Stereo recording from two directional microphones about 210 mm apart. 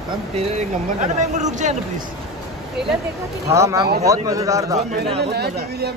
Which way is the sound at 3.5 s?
15° right (ahead or behind).